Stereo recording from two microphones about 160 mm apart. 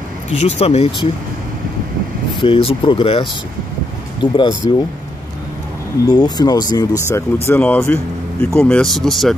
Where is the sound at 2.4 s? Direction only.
35° left (ahead or behind).